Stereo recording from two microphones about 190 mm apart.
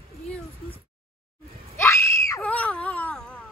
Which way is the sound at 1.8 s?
15° left (ahead or behind).